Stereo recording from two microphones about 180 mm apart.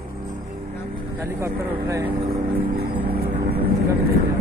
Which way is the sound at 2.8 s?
60° right (ahead or behind).